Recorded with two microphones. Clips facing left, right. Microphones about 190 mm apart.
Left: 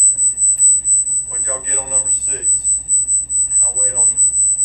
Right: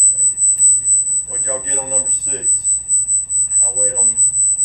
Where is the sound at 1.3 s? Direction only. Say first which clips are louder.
Right 4 dB; 30° right (ahead or behind).